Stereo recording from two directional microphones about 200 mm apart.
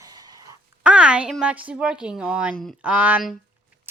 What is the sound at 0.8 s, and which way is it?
A woman's voice, 5° right (ahead or behind).